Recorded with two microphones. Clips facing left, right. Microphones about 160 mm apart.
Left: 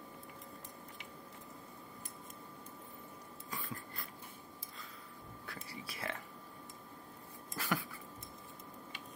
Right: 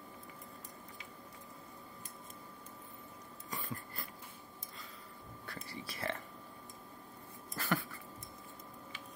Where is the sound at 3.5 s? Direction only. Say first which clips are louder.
Right 2 dB; centre (ahead or behind).